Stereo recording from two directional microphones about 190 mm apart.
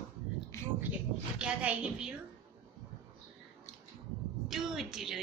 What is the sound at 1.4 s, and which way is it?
Speech, 5° right (ahead or behind).